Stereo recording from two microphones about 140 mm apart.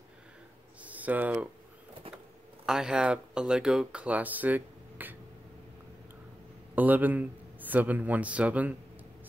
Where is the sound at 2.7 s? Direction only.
5° right (ahead or behind).